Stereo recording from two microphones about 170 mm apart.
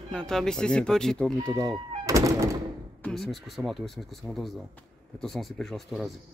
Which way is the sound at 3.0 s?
Centre (ahead or behind).